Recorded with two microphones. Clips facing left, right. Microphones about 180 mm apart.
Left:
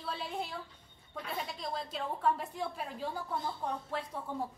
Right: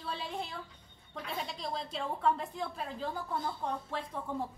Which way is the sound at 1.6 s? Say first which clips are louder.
Right 1 dB; 5° left (ahead or behind).